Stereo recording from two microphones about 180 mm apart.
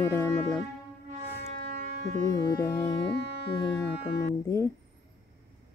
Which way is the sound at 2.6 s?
15° left (ahead or behind).